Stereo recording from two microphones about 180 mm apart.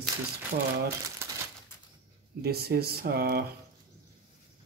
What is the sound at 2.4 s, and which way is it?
Speech, 60° right (ahead or behind).